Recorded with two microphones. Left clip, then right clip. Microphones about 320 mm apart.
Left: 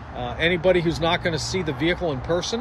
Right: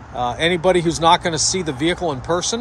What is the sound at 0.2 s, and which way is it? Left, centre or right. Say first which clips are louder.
Speech: right 4 dB; centre.